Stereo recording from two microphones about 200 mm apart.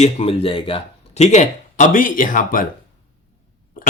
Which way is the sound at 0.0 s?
30° left (ahead or behind).